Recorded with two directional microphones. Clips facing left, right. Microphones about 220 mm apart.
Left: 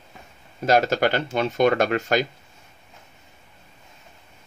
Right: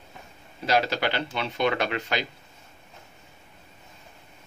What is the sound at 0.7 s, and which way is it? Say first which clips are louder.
Speech: left 5 dB; 45° left (ahead or behind).